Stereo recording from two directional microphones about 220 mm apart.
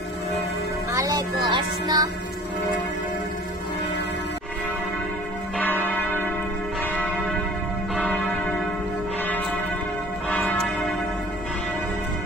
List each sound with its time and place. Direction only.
0.9 s music: 15° right (ahead or behind)
5.6 s church bell: 10° left (ahead or behind)